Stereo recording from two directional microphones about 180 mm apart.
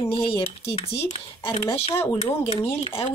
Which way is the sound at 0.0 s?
30° left (ahead or behind).